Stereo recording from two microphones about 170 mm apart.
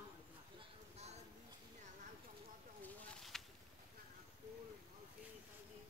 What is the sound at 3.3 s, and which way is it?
Insect, centre (ahead or behind).